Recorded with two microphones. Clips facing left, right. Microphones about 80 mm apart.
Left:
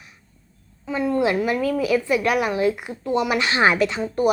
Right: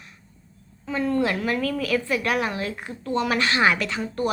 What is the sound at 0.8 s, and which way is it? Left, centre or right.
A woman's voice, centre.